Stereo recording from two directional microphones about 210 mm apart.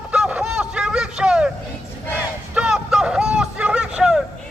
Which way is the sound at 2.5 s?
5° right (ahead or behind).